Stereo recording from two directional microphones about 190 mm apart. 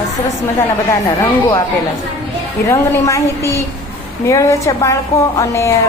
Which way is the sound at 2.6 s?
15° left (ahead or behind).